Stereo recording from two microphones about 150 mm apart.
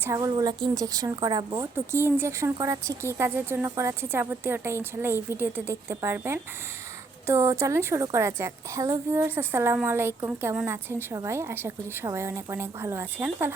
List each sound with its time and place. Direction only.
0.0 s a woman's voice: 20° right (ahead or behind)
1.7 s a woman's voice: 15° right (ahead or behind)